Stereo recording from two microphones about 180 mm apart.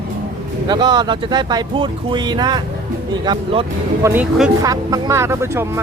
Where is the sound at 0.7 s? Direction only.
25° right (ahead or behind).